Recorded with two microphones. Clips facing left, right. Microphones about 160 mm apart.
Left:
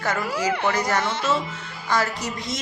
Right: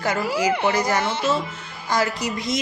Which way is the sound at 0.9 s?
5° right (ahead or behind).